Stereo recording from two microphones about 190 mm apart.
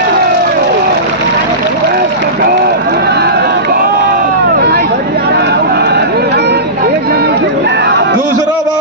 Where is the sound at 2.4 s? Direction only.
55° right (ahead or behind).